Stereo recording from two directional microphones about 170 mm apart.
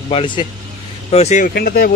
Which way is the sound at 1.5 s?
65° left (ahead or behind).